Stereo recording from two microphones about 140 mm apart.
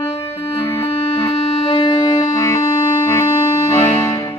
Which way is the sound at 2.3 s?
20° left (ahead or behind).